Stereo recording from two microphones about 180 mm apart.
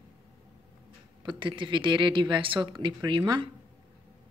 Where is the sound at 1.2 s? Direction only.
25° right (ahead or behind).